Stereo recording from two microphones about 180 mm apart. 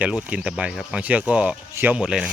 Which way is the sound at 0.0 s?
5° right (ahead or behind).